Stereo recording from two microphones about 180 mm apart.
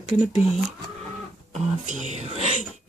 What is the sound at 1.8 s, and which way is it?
Speech, 40° right (ahead or behind).